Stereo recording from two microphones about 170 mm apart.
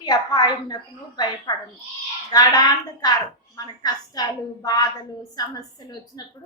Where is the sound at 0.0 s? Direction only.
25° left (ahead or behind).